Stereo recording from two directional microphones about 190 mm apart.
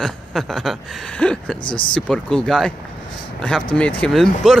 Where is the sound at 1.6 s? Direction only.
25° left (ahead or behind).